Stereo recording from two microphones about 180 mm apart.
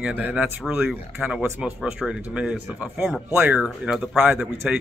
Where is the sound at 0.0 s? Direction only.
5° right (ahead or behind).